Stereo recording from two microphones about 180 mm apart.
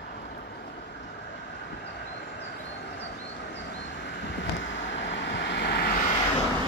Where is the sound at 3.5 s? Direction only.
80° left; by 6.1 s 55° left (ahead or behind).